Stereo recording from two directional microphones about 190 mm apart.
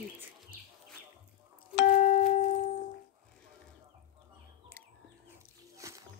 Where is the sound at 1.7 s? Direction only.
40° left (ahead or behind).